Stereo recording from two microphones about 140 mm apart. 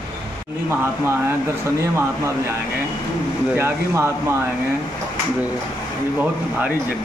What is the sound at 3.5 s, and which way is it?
Speech, 15° right (ahead or behind).